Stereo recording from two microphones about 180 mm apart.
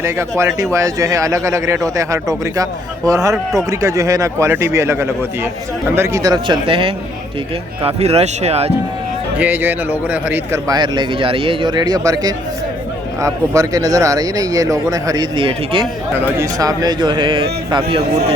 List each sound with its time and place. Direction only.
0.0 s a man's voice: 15° right (ahead or behind); by 8.7 s 35° right (ahead or behind)
9.4 s a man's voice: 10° right (ahead or behind); by 17.8 s 25° right (ahead or behind)